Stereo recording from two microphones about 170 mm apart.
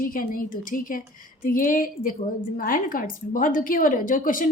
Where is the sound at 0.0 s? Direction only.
55° left (ahead or behind).